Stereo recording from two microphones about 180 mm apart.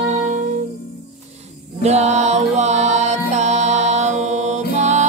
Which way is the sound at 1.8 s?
40° right (ahead or behind).